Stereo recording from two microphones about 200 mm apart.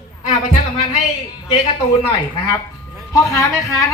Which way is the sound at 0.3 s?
35° left (ahead or behind).